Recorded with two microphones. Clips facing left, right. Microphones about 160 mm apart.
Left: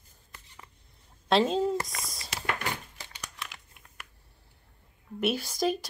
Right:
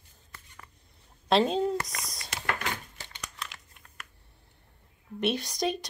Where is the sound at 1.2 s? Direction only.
Centre (ahead or behind).